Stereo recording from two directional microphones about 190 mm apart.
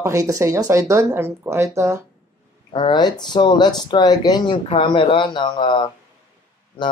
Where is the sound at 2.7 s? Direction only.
25° left (ahead or behind).